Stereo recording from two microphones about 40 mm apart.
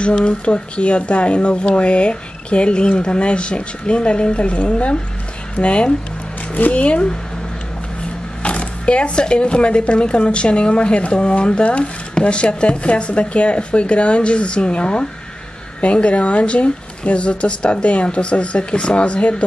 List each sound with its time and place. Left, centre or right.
0.0 s speech: left
8.4 s speech: left